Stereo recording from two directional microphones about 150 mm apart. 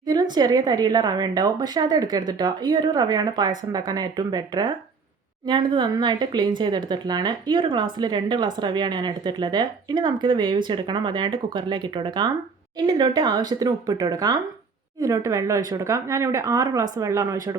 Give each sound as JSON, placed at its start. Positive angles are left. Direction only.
{"t": 0.1, "sound": "a woman's voice", "side_deg": -25}